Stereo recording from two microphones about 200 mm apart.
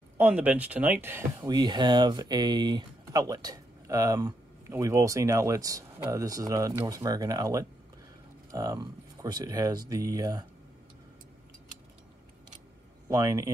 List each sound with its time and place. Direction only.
0.2 s speech: 5° right (ahead or behind)
13.1 s speech: 15° right (ahead or behind)